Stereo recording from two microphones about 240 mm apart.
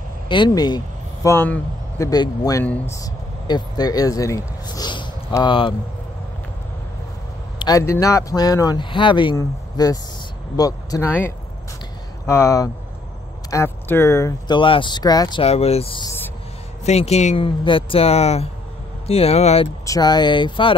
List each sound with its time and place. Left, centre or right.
0.3 s speech: centre
7.5 s speech: centre